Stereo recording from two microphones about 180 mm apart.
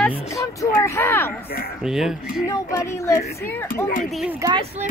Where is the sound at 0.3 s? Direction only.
15° left (ahead or behind).